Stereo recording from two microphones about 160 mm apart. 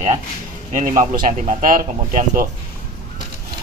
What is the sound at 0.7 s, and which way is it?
Speech, 50° right (ahead or behind).